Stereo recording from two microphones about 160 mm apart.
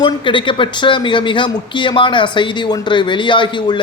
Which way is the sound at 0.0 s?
30° left (ahead or behind).